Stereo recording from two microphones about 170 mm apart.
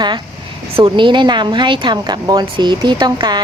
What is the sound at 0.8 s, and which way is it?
Speech, 30° right (ahead or behind).